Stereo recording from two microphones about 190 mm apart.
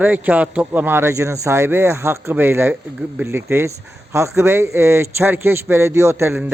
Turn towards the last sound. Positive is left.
turn(degrees=-10)  # may be behind; listen again after turning